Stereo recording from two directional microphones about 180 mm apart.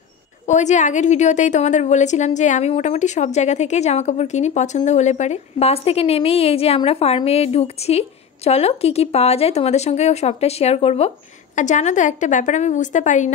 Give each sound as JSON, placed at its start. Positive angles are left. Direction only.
{"t": 0.5, "sound": "a woman's voice", "side_deg": 40}